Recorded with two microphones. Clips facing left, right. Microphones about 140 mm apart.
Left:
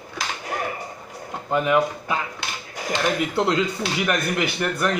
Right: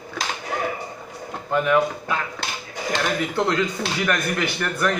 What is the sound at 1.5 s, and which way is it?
Speech, 15° left (ahead or behind).